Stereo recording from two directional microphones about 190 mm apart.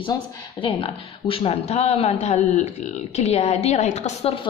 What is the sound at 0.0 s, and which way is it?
A man's voice, 25° left (ahead or behind).